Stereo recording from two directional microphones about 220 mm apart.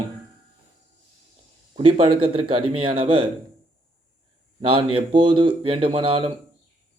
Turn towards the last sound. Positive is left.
turn(degrees=-25)  # may be behind; listen again after turning